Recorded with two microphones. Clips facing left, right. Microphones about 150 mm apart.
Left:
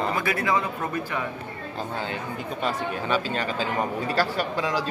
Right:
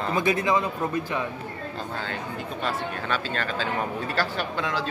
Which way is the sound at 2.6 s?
10° left (ahead or behind).